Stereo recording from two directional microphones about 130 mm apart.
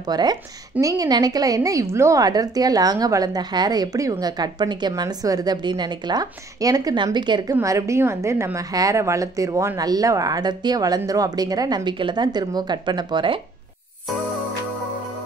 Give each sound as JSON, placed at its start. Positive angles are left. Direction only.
{"t": 0.0, "sound": "a woman's voice", "side_deg": -30}
{"t": 7.6, "sound": "a woman's voice", "side_deg": -25}